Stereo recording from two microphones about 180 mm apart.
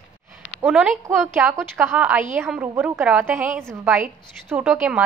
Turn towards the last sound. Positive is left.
turn(degrees=-5)  # may be behind; listen again after turning